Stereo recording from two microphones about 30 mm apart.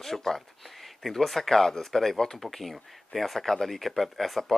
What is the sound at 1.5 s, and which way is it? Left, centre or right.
Speech, centre.